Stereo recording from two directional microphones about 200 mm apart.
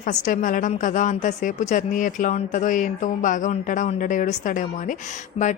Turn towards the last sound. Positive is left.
turn(degrees=30)  # may be behind; listen again after turning